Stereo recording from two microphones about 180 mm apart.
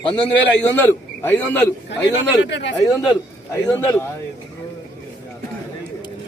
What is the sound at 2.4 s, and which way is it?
Speech, 80° left.